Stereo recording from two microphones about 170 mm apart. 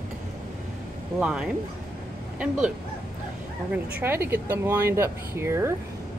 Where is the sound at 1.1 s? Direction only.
5° right (ahead or behind).